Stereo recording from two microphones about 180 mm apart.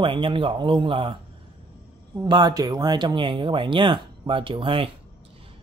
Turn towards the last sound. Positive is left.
turn(degrees=-30)  # may be behind; listen again after turning